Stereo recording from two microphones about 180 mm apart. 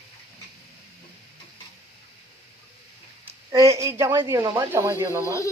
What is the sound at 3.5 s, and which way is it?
A woman's voice, 15° right (ahead or behind).